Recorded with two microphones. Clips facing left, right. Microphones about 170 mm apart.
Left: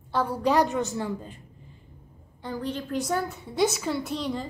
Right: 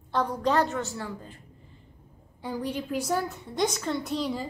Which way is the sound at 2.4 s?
10° right (ahead or behind).